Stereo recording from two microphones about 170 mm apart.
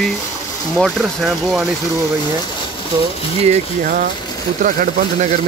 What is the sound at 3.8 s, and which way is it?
Speech, 55° right (ahead or behind).